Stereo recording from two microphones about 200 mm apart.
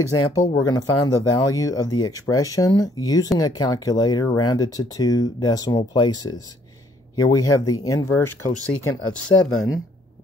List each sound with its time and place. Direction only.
0.3 s speech: 15° left (ahead or behind)
9.0 s speech: 90° left